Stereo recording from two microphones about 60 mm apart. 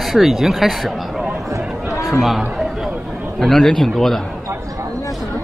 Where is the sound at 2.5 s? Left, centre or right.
Centre.